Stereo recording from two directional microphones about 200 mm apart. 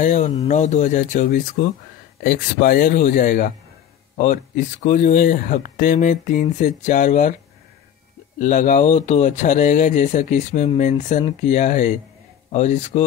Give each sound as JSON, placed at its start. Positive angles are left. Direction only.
{"t": 0.0, "sound": "speech", "side_deg": 35}
{"t": 8.4, "sound": "speech", "side_deg": 40}